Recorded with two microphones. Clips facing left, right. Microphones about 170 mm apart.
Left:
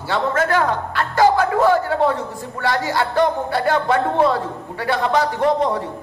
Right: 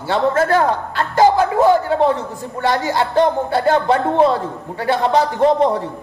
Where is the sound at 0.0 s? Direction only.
30° right (ahead or behind).